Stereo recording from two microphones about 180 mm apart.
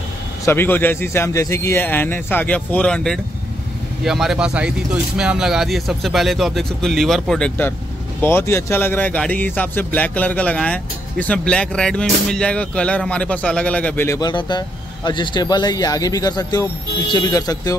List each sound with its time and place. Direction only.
0.5 s speech: 10° left (ahead or behind)